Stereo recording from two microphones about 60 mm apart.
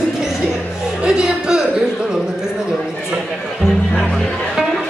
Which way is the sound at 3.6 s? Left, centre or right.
Centre.